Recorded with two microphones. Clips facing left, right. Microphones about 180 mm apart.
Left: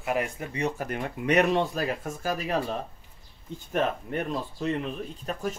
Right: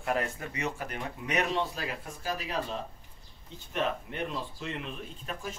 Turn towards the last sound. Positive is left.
turn(degrees=40)  # may be behind; listen again after turning